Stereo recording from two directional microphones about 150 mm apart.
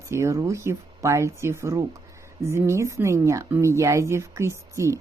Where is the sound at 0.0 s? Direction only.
20° right (ahead or behind).